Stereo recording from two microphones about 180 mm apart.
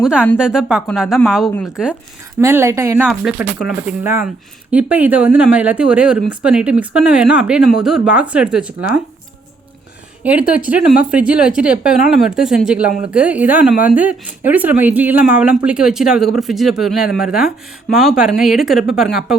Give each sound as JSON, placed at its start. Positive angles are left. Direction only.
{"t": 0.0, "sound": "speech", "side_deg": -5}
{"t": 2.4, "sound": "speech", "side_deg": -15}
{"t": 3.1, "sound": "speech", "side_deg": -5}
{"t": 10.2, "sound": "speech", "side_deg": -10}